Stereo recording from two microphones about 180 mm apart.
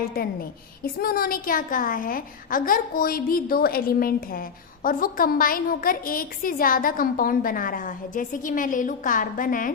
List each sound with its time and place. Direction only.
0.2 s a woman's voice: 55° left (ahead or behind)